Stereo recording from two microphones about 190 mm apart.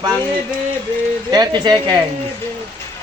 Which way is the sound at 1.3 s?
25° right (ahead or behind).